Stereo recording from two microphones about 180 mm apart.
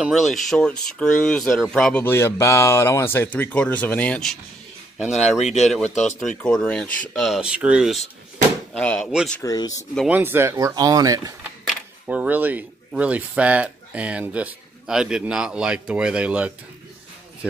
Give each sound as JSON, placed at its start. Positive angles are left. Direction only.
{"t": 0.0, "sound": "speech", "side_deg": 0}
{"t": 5.4, "sound": "speech", "side_deg": 40}
{"t": 6.2, "sound": "speech", "side_deg": 5}
{"t": 9.4, "sound": "speech", "side_deg": 20}
{"t": 10.0, "sound": "speech", "side_deg": -10}
{"t": 11.6, "sound": "speech", "side_deg": -5}